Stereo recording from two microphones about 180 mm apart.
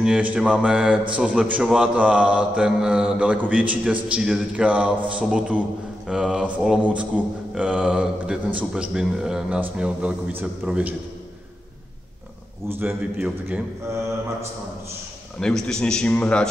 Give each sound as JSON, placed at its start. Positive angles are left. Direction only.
{"t": 0.0, "sound": "a man's voice", "side_deg": -5}
{"t": 12.6, "sound": "a man's voice", "side_deg": -10}
{"t": 15.4, "sound": "a man's voice", "side_deg": 5}